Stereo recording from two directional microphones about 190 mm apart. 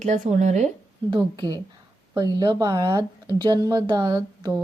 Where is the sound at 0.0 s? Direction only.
40° right (ahead or behind).